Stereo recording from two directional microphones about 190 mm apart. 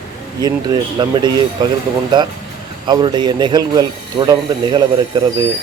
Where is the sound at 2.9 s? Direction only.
25° right (ahead or behind).